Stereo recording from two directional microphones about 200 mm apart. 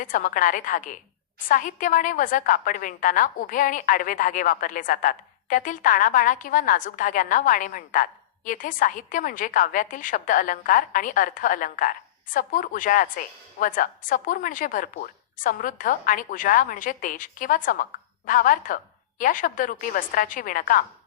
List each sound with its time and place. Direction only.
0.0 s a woman's voice: 40° left (ahead or behind)